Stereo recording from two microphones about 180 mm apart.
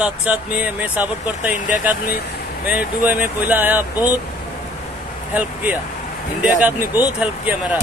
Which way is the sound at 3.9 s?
20° left (ahead or behind).